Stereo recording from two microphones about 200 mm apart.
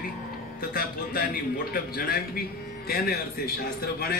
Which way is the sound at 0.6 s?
45° left (ahead or behind).